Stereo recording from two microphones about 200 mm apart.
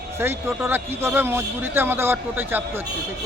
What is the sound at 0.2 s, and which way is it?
Speech, 10° right (ahead or behind).